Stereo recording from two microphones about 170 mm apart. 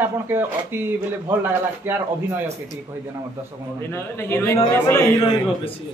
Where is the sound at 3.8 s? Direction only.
15° left (ahead or behind).